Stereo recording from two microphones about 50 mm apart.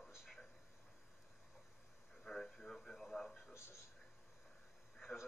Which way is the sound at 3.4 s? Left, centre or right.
Left.